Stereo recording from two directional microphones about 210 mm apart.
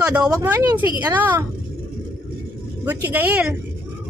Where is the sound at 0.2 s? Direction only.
15° right (ahead or behind).